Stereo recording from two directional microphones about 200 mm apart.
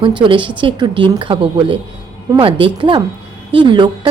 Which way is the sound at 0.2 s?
25° right (ahead or behind).